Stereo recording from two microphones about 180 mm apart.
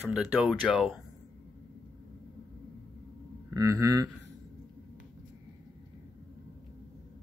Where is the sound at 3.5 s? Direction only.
20° right (ahead or behind).